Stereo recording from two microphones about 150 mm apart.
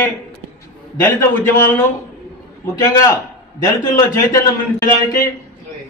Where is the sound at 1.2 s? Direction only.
15° left (ahead or behind).